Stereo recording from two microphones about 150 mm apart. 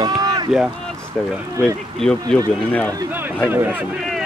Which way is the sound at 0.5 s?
Centre (ahead or behind).